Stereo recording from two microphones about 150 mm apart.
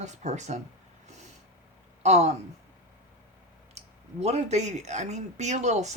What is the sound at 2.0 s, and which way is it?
Speech, 45° right (ahead or behind).